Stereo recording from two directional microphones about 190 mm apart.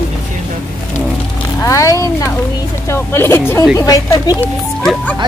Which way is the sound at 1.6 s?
15° left (ahead or behind).